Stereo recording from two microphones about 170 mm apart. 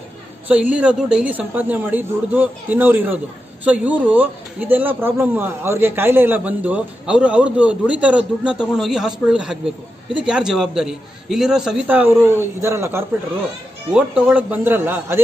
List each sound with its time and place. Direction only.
0.5 s a man's voice: 10° right (ahead or behind)